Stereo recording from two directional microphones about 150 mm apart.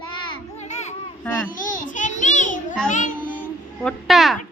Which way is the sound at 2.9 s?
60° left (ahead or behind).